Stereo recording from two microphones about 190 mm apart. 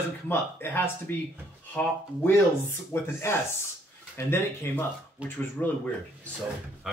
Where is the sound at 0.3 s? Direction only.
10° left (ahead or behind).